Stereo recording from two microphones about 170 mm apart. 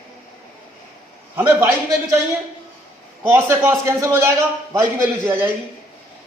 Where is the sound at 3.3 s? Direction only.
15° right (ahead or behind).